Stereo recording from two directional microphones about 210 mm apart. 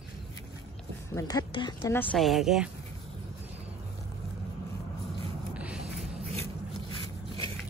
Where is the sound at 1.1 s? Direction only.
20° left (ahead or behind).